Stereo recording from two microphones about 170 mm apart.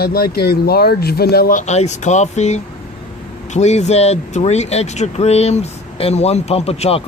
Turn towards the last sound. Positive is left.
turn(degrees=35)  # may be behind; listen again after turning